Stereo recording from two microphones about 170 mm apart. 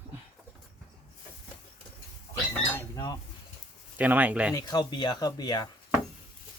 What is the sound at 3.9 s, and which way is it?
Speech, 10° right (ahead or behind).